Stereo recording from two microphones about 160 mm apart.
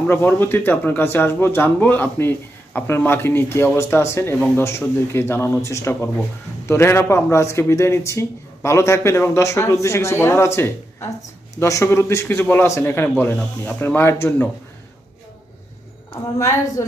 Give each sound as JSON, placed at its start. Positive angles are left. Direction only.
{"t": 0.1, "sound": "speech", "side_deg": 15}
{"t": 16.1, "sound": "a woman's voice", "side_deg": 20}